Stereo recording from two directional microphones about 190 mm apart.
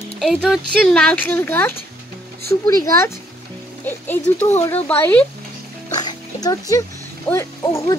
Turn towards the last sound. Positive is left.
turn(degrees=15)  # may be behind; listen again after turning